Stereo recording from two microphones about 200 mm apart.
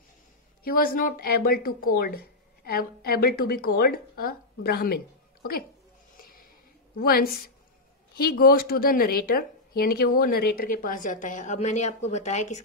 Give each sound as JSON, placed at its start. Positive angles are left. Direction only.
{"t": 0.7, "sound": "speech", "side_deg": 45}
{"t": 6.1, "sound": "a sound", "side_deg": 45}
{"t": 7.0, "sound": "speech", "side_deg": 50}